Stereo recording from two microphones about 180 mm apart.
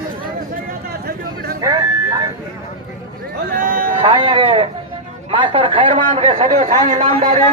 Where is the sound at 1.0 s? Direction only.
55° right (ahead or behind).